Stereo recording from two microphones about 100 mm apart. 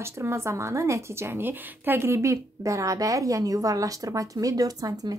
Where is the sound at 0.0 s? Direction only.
25° right (ahead or behind).